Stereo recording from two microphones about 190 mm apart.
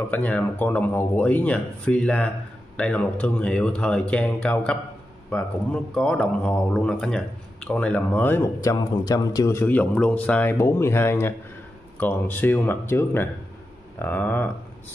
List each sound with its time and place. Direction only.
0.1 s speech: 10° left (ahead or behind)
5.9 s speech: 5° left (ahead or behind)